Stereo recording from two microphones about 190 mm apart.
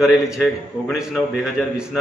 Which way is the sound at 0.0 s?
Centre (ahead or behind).